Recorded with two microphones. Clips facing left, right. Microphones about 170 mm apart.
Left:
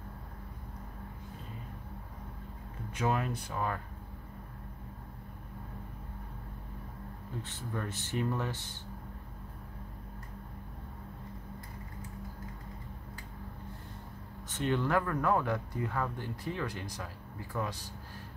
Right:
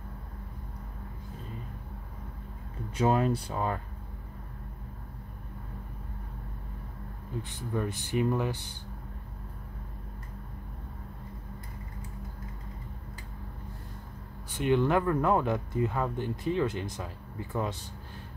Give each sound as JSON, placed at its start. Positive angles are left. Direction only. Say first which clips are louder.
{"t": 3.0, "sound": "speech", "louder": "right 6 dB", "side_deg": -30}
{"t": 7.4, "sound": "speech", "louder": "right 7 dB", "side_deg": -15}
{"t": 14.6, "sound": "speech", "louder": "right 5 dB", "side_deg": -20}